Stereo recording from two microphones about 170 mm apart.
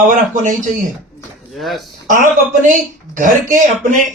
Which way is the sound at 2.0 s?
50° right (ahead or behind).